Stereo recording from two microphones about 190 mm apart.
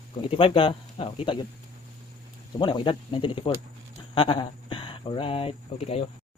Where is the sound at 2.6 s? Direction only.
25° left (ahead or behind).